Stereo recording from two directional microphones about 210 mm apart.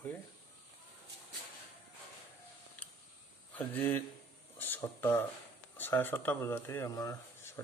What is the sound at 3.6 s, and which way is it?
Speech, 10° left (ahead or behind).